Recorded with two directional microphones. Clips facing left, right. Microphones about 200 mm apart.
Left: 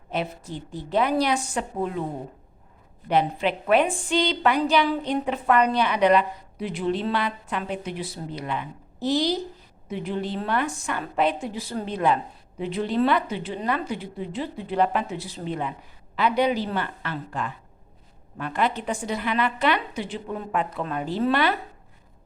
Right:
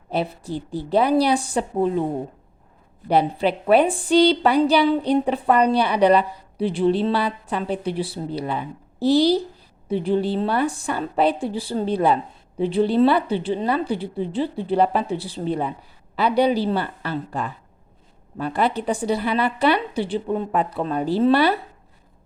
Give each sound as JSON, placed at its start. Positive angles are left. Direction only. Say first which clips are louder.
{"t": 0.1, "sound": "a woman's voice", "louder": "right 5 dB", "side_deg": -35}
{"t": 3.1, "sound": "a woman's voice", "louder": "right 3 dB", "side_deg": -35}